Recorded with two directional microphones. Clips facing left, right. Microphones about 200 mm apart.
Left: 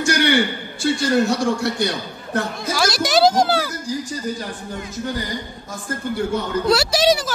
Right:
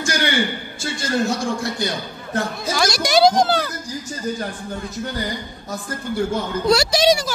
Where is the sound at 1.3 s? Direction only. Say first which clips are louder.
Left 3 dB; 65° left (ahead or behind).